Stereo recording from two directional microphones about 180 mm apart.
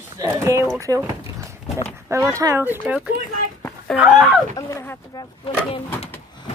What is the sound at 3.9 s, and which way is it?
Speech, 5° right (ahead or behind).